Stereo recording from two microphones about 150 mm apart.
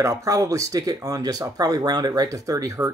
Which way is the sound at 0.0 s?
20° right (ahead or behind).